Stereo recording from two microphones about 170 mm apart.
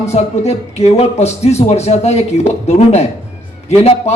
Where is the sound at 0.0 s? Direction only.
40° left (ahead or behind).